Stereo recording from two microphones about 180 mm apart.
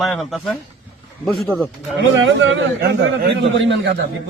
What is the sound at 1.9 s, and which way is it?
A man's voice, 90° right.